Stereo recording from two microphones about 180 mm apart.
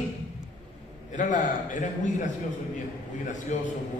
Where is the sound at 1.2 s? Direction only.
45° left (ahead or behind).